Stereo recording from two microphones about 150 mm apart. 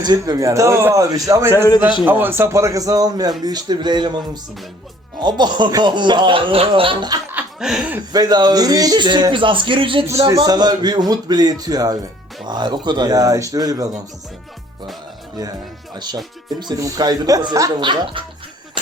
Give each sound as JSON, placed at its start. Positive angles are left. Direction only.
{"t": 0.0, "sound": "speech", "side_deg": -25}
{"t": 5.2, "sound": "speech", "side_deg": -30}
{"t": 7.3, "sound": "chuckle", "side_deg": -5}
{"t": 8.1, "sound": "speech", "side_deg": -25}
{"t": 16.0, "sound": "speech", "side_deg": -30}